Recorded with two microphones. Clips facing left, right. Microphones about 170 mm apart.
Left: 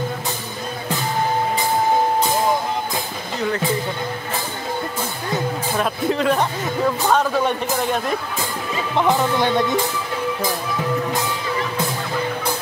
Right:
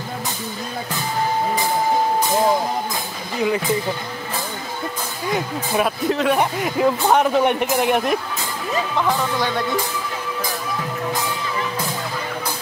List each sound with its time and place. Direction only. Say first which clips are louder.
3.3 s speech: right 3 dB; 10° right (ahead or behind)
6.0 s speech: left 2 dB; centre (ahead or behind)
6.6 s speech: right 2 dB; 15° right (ahead or behind)
8.9 s speech: left 5 dB; 20° left (ahead or behind)